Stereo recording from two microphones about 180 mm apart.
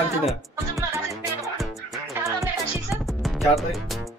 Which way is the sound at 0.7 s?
15° right (ahead or behind).